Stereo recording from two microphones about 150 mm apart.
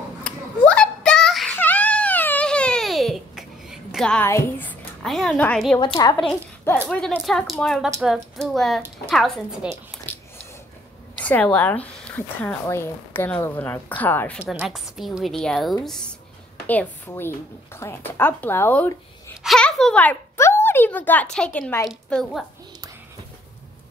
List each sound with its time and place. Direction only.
0.2 s a sound: 5° left (ahead or behind)
1.6 s baby cry: 10° left (ahead or behind)
4.3 s a child's voice: 15° left (ahead or behind)
5.9 s speech: 25° left (ahead or behind)
6.9 s a woman's voice: 5° left (ahead or behind)
10.1 s a sound: 10° left (ahead or behind)
11.2 s speech: 10° left (ahead or behind)
14.5 s a woman's voice: 5° right (ahead or behind); by 18.9 s 15° left (ahead or behind)
19.4 s speech: 5° left (ahead or behind)
21.8 s a woman's voice: centre (ahead or behind)